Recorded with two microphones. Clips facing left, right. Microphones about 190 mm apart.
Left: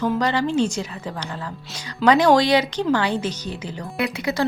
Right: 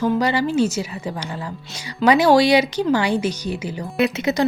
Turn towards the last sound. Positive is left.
turn(degrees=-20)  # may be behind; listen again after turning